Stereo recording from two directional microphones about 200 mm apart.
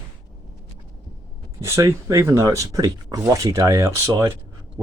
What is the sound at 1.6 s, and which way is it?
Speech, 15° right (ahead or behind).